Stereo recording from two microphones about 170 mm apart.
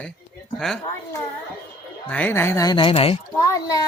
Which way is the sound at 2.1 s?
10° left (ahead or behind).